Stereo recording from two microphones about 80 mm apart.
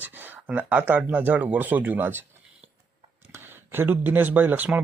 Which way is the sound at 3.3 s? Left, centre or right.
Right.